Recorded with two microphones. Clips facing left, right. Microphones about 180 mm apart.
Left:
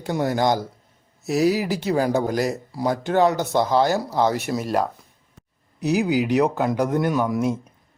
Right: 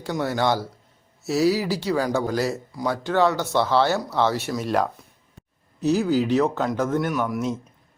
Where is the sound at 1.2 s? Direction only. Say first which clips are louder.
Left 1 dB; 20° left (ahead or behind).